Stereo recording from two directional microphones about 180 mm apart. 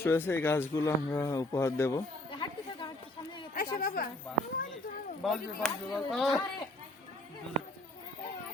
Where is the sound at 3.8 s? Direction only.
50° left (ahead or behind).